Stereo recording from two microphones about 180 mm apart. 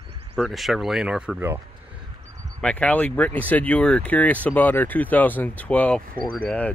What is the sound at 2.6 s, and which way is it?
Speech, 5° left (ahead or behind).